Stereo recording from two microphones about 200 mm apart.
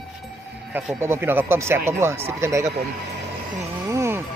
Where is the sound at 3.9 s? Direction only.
15° right (ahead or behind).